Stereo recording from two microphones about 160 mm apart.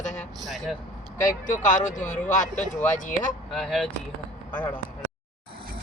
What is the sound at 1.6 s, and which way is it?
Speech, 50° left (ahead or behind).